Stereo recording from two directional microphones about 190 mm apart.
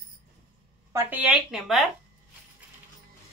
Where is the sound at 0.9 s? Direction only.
10° right (ahead or behind).